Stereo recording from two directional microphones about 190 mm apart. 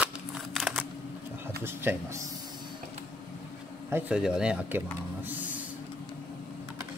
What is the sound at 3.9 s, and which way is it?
Speech, 10° right (ahead or behind).